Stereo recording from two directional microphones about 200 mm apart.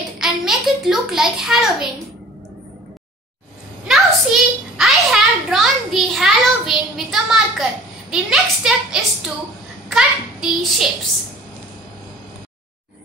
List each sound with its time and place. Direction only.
0.2 s a child's voice: centre (ahead or behind)
3.8 s a sound: centre (ahead or behind)
8.1 s a woman's voice: 5° right (ahead or behind)